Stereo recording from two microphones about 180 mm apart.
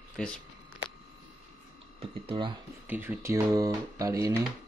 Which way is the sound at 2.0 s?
30° right (ahead or behind).